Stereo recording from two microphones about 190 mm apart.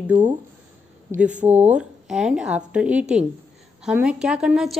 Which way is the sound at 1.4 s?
10° right (ahead or behind).